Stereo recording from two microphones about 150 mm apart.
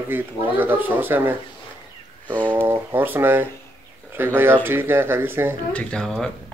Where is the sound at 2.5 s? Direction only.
15° right (ahead or behind).